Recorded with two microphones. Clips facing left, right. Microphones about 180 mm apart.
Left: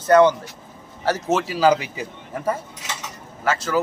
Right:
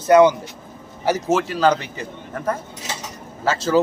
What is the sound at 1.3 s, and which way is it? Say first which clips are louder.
Speech: left 1 dB; 5° left (ahead or behind).